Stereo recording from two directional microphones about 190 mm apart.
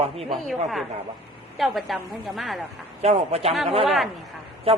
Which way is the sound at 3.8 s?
Centre (ahead or behind).